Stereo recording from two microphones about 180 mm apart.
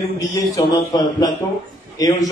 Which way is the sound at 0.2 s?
20° left (ahead or behind).